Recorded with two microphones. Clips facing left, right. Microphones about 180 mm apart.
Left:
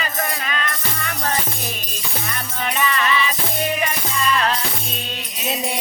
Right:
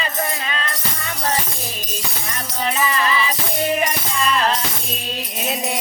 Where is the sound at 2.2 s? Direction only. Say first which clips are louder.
Right 3 dB; 30° right (ahead or behind).